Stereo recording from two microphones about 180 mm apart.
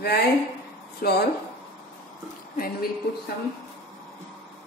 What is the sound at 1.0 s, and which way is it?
Speech, 60° left (ahead or behind).